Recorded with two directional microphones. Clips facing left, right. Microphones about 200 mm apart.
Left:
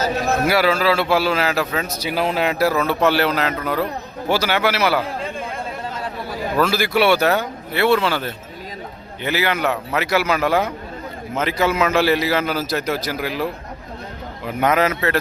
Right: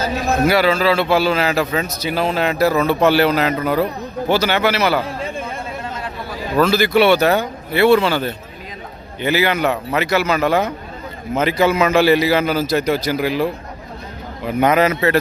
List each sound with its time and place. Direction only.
0.4 s a man's voice: 5° left (ahead or behind)
2.0 s a man's voice: 10° left (ahead or behind); by 3.8 s 5° right (ahead or behind)
4.3 s a man's voice: 5° left (ahead or behind)
6.6 s a man's voice: 10° left (ahead or behind)